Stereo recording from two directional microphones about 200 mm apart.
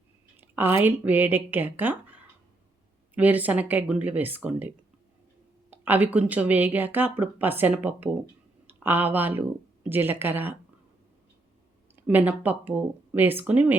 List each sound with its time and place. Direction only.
0.3 s speech: 10° right (ahead or behind)
5.7 s speech: 10° right (ahead or behind)
12.0 s speech: 5° right (ahead or behind)